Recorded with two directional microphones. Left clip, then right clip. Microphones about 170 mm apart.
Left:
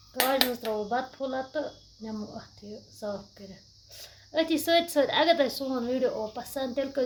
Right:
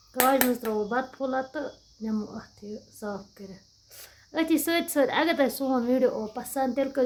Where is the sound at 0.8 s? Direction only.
40° right (ahead or behind).